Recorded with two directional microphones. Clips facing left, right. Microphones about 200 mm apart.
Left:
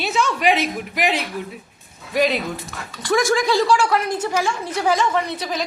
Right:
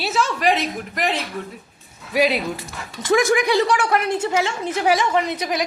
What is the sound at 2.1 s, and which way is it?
A woman's voice, 10° right (ahead or behind).